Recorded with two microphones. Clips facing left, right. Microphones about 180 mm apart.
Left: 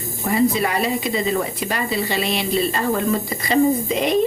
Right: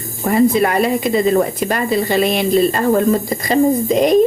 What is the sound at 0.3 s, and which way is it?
Speech, 50° right (ahead or behind).